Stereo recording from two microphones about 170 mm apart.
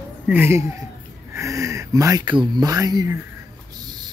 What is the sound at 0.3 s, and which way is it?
Speech, 15° right (ahead or behind).